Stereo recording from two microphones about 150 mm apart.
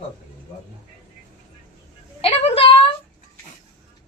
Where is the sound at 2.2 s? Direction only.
40° left (ahead or behind).